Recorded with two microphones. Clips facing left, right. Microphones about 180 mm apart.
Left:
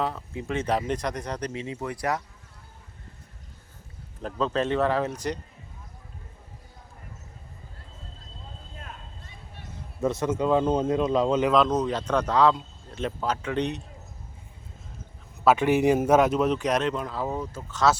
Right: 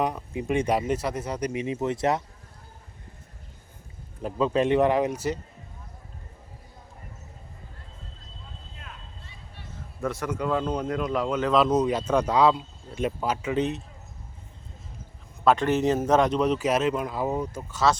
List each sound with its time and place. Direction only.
0.0 s speech: 15° right (ahead or behind)
4.2 s speech: 10° right (ahead or behind)
10.0 s speech: 20° left (ahead or behind)
11.5 s speech: 10° right (ahead or behind)
15.4 s a man's voice: 10° left (ahead or behind); by 17.8 s 10° right (ahead or behind)